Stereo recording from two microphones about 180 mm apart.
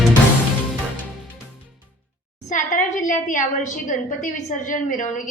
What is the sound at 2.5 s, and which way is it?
A woman's voice, 45° left (ahead or behind).